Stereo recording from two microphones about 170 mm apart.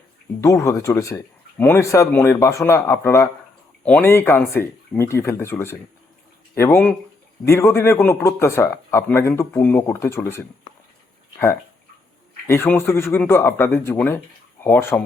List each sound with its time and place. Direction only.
0.4 s speech: 20° left (ahead or behind)
12.5 s speech: 10° left (ahead or behind)